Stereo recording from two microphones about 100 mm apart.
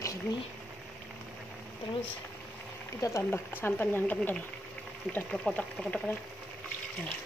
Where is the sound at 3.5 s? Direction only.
20° left (ahead or behind).